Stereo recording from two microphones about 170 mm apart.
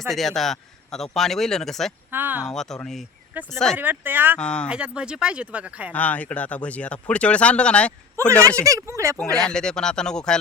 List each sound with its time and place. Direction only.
0.1 s a man's voice: centre (ahead or behind)
2.0 s speech: 10° right (ahead or behind)
2.5 s a man's voice: 5° left (ahead or behind)
3.3 s speech: 10° right (ahead or behind)
4.4 s a man's voice: 5° left (ahead or behind)
4.7 s speech: 5° right (ahead or behind)
5.9 s speech: 10° left (ahead or behind)
8.5 s speech: 20° right (ahead or behind)
9.4 s a man's voice: 5° left (ahead or behind)